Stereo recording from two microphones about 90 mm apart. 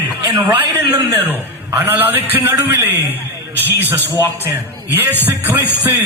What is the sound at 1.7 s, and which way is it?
Speech, 20° right (ahead or behind).